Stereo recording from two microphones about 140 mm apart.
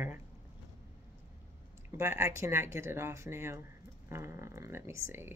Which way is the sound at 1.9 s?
15° right (ahead or behind).